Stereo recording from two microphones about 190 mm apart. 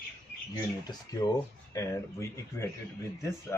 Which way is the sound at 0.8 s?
20° left (ahead or behind).